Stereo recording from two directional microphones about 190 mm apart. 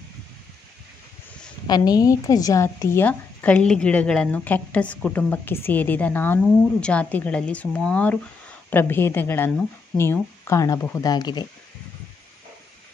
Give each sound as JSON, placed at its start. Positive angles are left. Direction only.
{"t": 1.7, "sound": "a woman's voice", "side_deg": 20}